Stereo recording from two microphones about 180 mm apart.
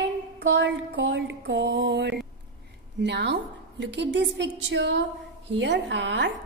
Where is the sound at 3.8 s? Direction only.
75° right (ahead or behind).